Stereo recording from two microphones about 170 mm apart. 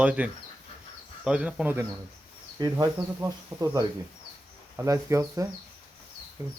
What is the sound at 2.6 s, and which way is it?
Speech, 20° right (ahead or behind).